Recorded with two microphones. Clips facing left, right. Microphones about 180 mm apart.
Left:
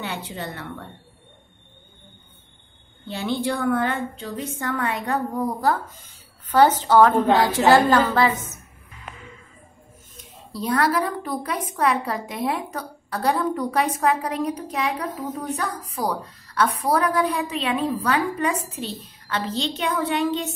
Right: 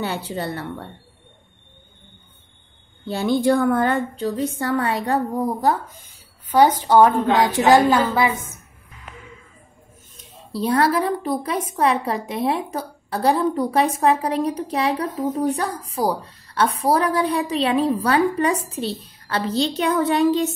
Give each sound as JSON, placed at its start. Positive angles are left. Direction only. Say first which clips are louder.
{"t": 0.0, "sound": "a woman's voice", "louder": "right 5 dB", "side_deg": -35}
{"t": 3.1, "sound": "a woman's voice", "louder": "right 7 dB", "side_deg": -45}
{"t": 6.5, "sound": "a woman's voice", "louder": "right 1 dB", "side_deg": -10}
{"t": 10.5, "sound": "a woman's voice", "louder": "right 3 dB", "side_deg": -25}